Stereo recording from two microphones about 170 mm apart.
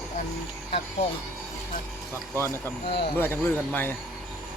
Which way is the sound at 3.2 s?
10° left (ahead or behind).